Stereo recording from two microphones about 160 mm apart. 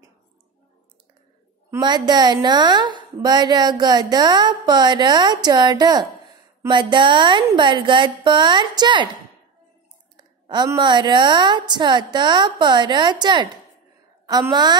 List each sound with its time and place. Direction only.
1.8 s a woman's voice: 25° right (ahead or behind)
10.4 s a woman's voice: 25° right (ahead or behind)